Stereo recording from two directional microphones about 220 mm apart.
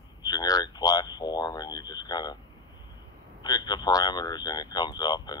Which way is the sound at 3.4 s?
15° left (ahead or behind).